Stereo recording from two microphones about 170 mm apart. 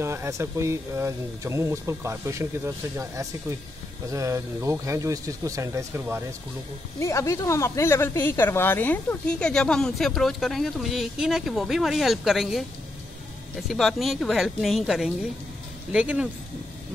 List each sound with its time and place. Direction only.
0.0 s speech: 15° right (ahead or behind)
7.0 s speech: 15° left (ahead or behind); by 12.6 s centre (ahead or behind)
13.7 s speech: centre (ahead or behind)